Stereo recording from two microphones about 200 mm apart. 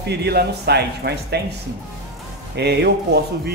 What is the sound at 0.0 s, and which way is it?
Speech, 55° right (ahead or behind).